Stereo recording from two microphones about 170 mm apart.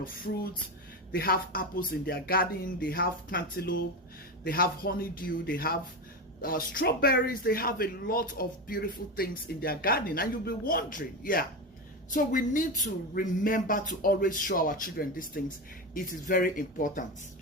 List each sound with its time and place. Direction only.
0.0 s speech: 60° left (ahead or behind)